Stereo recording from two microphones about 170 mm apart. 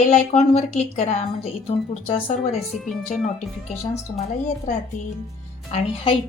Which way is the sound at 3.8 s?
40° left (ahead or behind).